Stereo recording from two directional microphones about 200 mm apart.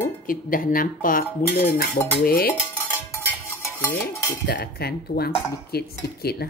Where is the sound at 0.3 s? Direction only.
45° left (ahead or behind).